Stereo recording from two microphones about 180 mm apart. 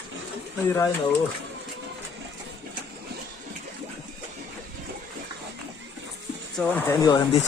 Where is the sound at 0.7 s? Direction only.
15° left (ahead or behind).